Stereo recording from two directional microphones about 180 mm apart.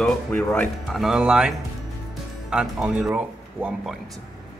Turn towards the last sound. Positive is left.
turn(degrees=-5)  # may be behind; listen again after turning